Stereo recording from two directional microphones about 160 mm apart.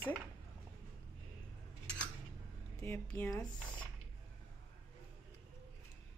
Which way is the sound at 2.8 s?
15° left (ahead or behind).